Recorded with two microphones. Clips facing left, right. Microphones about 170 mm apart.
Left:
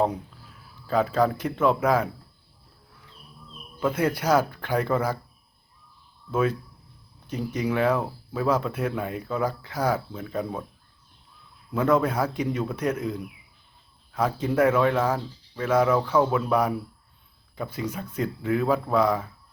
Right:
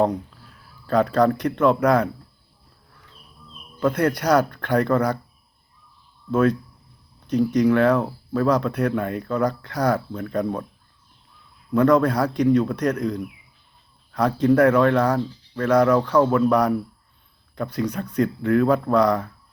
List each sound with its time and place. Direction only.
0.9 s speech: 5° left (ahead or behind)
3.8 s speech: 5° left (ahead or behind)
6.3 s speech: 10° left (ahead or behind)
11.7 s speech: 5° left (ahead or behind)